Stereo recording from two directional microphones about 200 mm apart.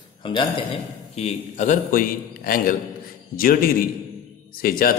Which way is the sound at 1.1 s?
35° left (ahead or behind).